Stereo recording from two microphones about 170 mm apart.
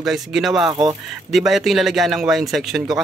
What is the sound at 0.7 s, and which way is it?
Speech, 25° right (ahead or behind).